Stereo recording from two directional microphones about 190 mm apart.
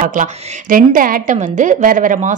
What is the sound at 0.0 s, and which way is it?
A woman's voice, 45° right (ahead or behind).